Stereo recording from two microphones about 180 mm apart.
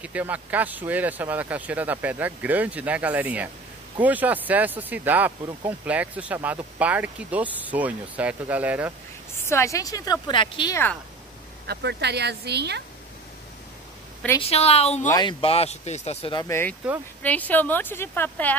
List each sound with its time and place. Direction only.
0.0 s speech: 10° right (ahead or behind)
9.5 s a woman's voice: 15° left (ahead or behind)
11.6 s speech: 65° right (ahead or behind)
14.4 s speech: 35° left (ahead or behind)
15.0 s speech: 25° left (ahead or behind)
16.4 s speech: 15° left (ahead or behind)